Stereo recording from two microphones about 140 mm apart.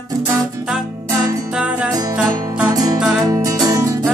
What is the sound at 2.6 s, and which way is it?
Music, 25° right (ahead or behind).